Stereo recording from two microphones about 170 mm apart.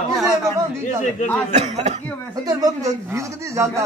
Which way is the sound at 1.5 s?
40° right (ahead or behind).